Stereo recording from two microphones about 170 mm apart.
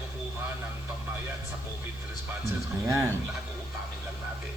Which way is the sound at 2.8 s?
15° right (ahead or behind).